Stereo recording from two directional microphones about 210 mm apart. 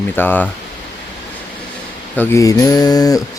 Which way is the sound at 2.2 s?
15° left (ahead or behind).